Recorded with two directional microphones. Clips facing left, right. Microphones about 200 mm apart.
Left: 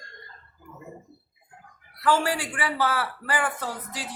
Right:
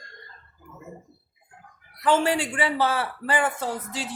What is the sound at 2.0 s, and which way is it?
A man's voice, 20° right (ahead or behind).